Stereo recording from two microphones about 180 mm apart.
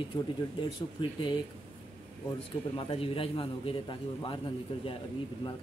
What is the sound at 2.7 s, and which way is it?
A man's voice, 30° left (ahead or behind).